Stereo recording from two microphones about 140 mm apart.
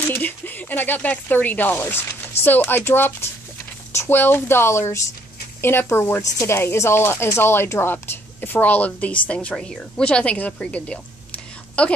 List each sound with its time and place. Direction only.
0.1 s a woman's voice: 15° left (ahead or behind)